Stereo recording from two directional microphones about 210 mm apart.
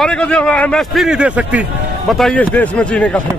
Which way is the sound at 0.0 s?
5° left (ahead or behind).